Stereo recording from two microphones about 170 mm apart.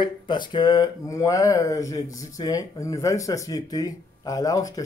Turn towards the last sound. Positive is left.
turn(degrees=20)  # may be behind; listen again after turning